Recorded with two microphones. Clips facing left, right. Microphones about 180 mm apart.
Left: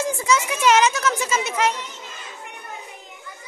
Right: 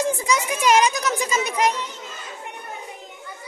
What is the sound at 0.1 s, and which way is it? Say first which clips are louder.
A woman's voice: left 1 dB; 15° right (ahead or behind).